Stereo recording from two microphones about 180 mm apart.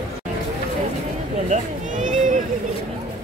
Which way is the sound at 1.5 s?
45° right (ahead or behind).